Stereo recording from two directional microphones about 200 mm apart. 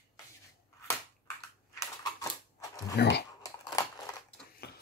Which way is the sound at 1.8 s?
15° left (ahead or behind).